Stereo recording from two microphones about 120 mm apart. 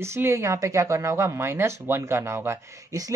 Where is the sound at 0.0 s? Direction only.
20° right (ahead or behind).